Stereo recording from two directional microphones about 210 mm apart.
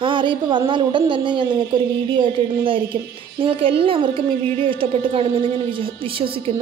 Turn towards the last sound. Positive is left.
turn(degrees=-25)  # may be behind; listen again after turning